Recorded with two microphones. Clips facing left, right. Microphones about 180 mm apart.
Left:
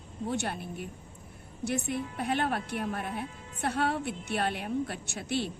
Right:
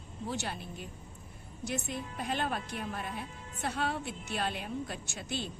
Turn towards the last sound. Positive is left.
turn(degrees=65)  # may be behind; listen again after turning